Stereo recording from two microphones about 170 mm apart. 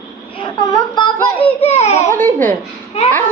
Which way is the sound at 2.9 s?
40° left (ahead or behind).